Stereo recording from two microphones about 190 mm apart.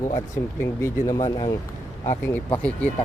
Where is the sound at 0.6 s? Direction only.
15° left (ahead or behind).